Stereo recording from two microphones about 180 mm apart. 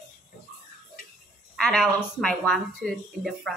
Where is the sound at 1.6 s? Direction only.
Centre (ahead or behind).